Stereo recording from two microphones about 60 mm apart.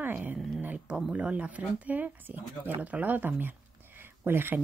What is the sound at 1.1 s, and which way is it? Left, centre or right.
Speech, right.